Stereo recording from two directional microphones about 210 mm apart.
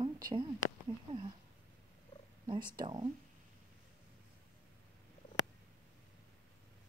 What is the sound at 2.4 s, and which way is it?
Speech, 20° right (ahead or behind).